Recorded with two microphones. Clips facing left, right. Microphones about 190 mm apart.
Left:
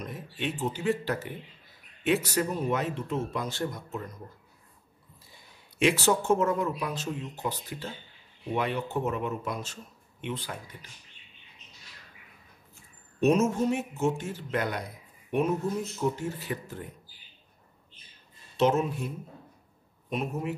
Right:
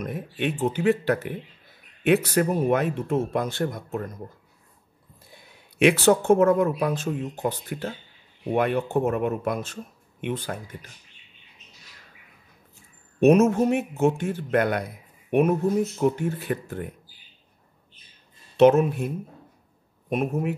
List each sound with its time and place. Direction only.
0.0 s speech: 55° right (ahead or behind)
5.3 s speech: 60° right (ahead or behind)
13.2 s speech: 60° right (ahead or behind)
16.0 s speech: 60° right (ahead or behind)
18.6 s speech: 60° right (ahead or behind)